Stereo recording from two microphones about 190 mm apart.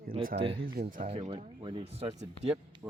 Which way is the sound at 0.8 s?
45° right (ahead or behind).